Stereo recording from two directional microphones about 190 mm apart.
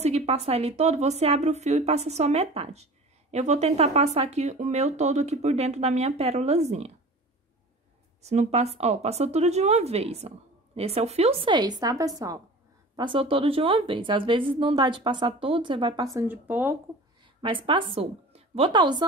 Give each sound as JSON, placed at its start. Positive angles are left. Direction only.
{"t": 0.0, "sound": "speech", "side_deg": -35}
{"t": 8.2, "sound": "a woman's voice", "side_deg": -35}
{"t": 16.2, "sound": "speech", "side_deg": -10}
{"t": 17.4, "sound": "speech", "side_deg": -25}